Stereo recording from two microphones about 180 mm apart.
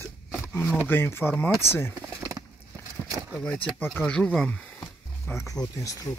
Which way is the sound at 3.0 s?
15° right (ahead or behind).